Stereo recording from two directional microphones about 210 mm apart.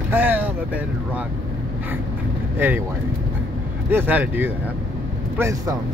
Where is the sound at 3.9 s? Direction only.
10° right (ahead or behind).